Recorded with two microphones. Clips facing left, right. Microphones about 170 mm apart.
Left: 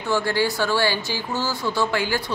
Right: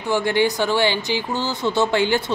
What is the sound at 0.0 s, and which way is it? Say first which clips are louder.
A woman's voice: right 3 dB; 20° right (ahead or behind).